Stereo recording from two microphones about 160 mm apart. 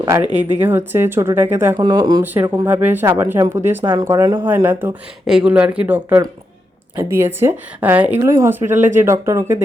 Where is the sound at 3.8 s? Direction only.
30° right (ahead or behind).